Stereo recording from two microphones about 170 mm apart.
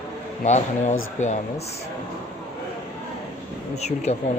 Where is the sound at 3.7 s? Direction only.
40° left (ahead or behind).